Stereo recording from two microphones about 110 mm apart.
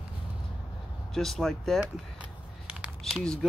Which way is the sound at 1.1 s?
5° left (ahead or behind).